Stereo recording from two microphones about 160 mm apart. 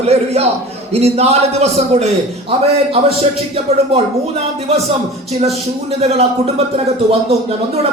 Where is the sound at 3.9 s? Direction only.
40° right (ahead or behind).